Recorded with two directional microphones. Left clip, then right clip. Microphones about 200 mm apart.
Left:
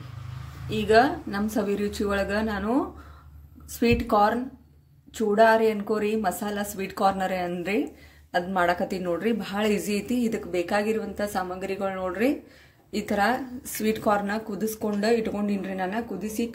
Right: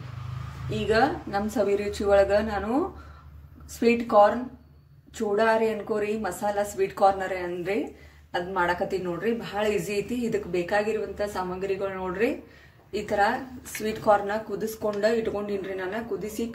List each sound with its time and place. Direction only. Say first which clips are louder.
0.7 s a woman's voice: left 3 dB; 40° left (ahead or behind)
3.8 s a woman's voice: right 2 dB; 35° left (ahead or behind)